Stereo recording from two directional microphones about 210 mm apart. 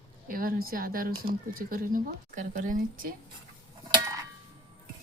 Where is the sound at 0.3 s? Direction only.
40° right (ahead or behind).